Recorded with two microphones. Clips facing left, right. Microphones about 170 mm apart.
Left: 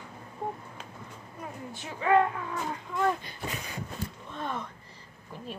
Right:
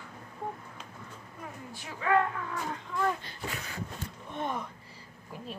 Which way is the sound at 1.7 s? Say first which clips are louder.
Left 3 dB; 25° left (ahead or behind).